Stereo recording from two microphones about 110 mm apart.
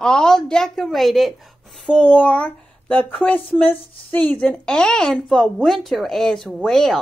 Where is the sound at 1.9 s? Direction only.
10° left (ahead or behind).